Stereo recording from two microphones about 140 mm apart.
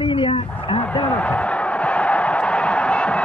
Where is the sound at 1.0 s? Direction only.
10° left (ahead or behind).